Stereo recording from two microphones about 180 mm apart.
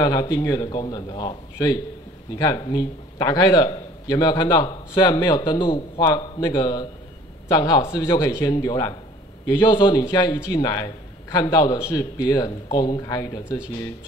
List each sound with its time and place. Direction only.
0.0 s a man's voice: 20° left (ahead or behind)